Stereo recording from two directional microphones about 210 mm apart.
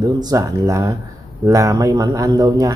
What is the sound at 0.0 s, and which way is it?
Speech, 15° right (ahead or behind).